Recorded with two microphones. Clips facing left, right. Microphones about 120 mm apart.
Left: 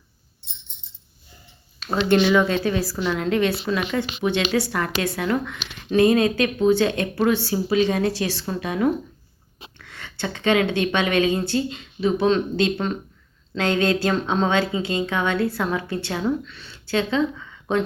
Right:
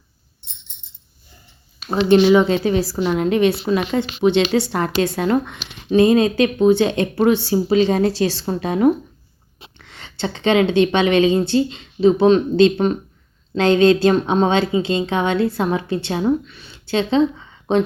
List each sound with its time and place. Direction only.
1.8 s a woman's voice: 15° right (ahead or behind)